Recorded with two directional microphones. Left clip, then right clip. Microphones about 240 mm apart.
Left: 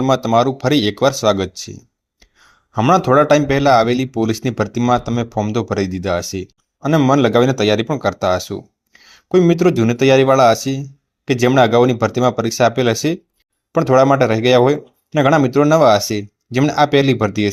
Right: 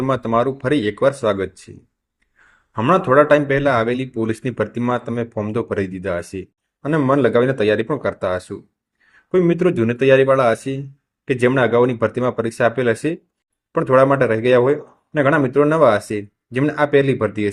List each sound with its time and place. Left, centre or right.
0.0 s speech: left
2.7 s speech: left